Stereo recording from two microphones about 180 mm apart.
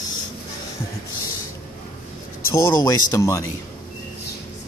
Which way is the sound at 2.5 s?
15° left (ahead or behind).